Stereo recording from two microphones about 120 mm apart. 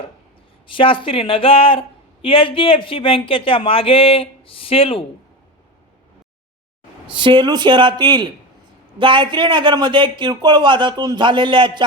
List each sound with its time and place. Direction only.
0.7 s speech: 45° left (ahead or behind)
7.1 s a man's voice: 45° right (ahead or behind)